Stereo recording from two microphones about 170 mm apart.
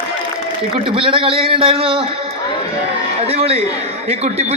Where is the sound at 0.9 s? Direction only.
30° right (ahead or behind).